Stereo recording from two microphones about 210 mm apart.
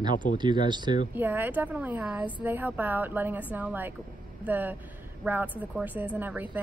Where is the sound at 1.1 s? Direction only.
10° right (ahead or behind).